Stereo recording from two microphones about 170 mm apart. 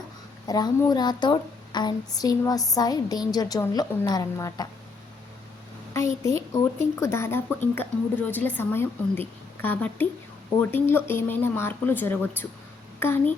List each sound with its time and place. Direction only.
0.4 s a woman's voice: 25° left (ahead or behind)
6.2 s speech: 15° left (ahead or behind)